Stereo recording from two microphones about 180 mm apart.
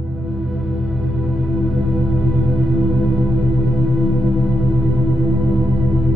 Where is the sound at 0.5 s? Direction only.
Centre (ahead or behind).